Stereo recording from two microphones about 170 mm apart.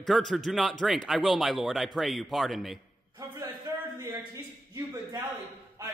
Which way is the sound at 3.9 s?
20° right (ahead or behind).